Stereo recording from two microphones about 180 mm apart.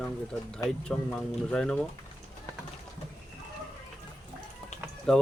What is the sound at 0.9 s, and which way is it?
Speech, 5° left (ahead or behind).